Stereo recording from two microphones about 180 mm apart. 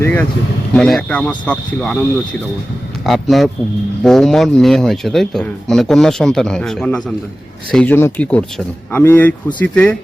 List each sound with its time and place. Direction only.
0.0 s speech: 10° left (ahead or behind)
3.1 s speech: centre (ahead or behind)